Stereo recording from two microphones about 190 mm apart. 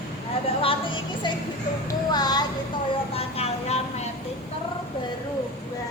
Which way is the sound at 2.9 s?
30° left (ahead or behind).